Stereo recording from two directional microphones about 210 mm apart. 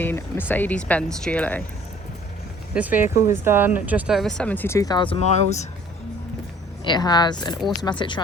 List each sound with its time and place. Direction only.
0.0 s speech: 10° left (ahead or behind)
2.7 s speech: 5° right (ahead or behind); by 5.6 s 30° left (ahead or behind)
6.8 s speech: 20° left (ahead or behind)